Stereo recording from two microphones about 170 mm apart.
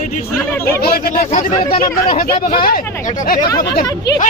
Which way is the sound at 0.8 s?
65° left (ahead or behind).